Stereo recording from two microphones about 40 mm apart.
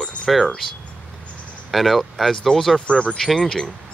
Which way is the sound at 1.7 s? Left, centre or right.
Centre.